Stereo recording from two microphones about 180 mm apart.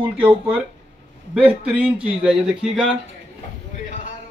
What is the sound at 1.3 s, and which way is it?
Speech, 5° right (ahead or behind).